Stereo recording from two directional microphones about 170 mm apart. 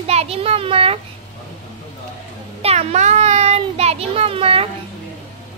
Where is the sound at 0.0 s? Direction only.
35° right (ahead or behind).